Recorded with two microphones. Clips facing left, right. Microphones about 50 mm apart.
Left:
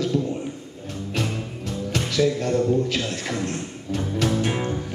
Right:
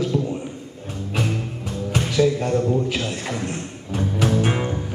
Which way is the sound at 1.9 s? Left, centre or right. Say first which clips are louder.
Right 3 dB; centre.